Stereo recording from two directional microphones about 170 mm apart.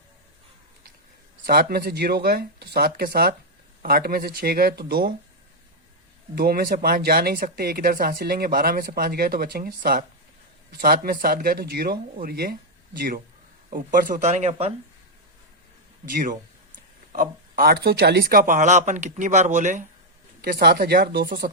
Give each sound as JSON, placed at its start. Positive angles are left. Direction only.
{"t": 1.5, "sound": "speech", "side_deg": -65}
{"t": 6.3, "sound": "speech", "side_deg": -60}
{"t": 16.0, "sound": "speech", "side_deg": -55}
{"t": 20.4, "sound": "speech", "side_deg": -65}